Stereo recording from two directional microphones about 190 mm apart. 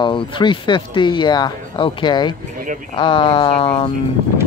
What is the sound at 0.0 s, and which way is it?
Speech, 25° left (ahead or behind).